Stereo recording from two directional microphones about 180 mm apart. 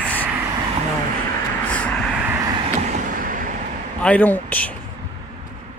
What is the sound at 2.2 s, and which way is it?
Vehicle, 15° right (ahead or behind).